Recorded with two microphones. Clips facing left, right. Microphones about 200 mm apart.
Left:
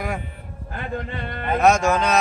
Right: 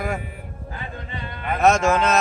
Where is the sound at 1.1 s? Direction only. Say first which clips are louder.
Left 3 dB; 60° left (ahead or behind).